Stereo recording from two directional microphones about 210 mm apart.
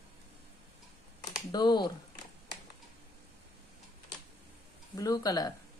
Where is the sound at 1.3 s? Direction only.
20° left (ahead or behind).